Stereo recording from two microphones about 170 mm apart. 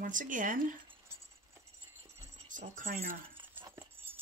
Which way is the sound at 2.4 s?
50° right (ahead or behind).